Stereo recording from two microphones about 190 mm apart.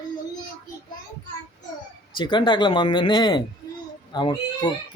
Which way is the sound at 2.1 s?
25° left (ahead or behind).